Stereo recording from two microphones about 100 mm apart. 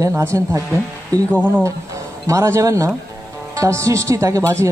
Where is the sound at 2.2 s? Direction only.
30° right (ahead or behind).